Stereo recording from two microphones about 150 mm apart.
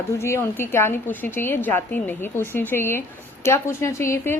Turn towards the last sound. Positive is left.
turn(degrees=20)  # may be behind; listen again after turning